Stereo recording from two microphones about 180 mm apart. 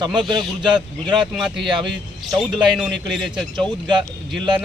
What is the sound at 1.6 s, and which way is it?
Speech, 25° right (ahead or behind).